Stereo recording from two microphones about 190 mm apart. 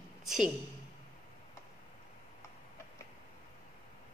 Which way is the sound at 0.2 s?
Centre (ahead or behind).